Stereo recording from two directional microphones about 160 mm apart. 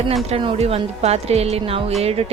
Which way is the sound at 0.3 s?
35° right (ahead or behind).